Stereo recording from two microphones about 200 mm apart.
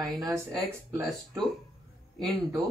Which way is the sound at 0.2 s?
15° right (ahead or behind).